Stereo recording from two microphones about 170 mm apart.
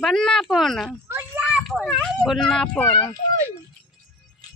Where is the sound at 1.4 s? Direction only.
Centre (ahead or behind).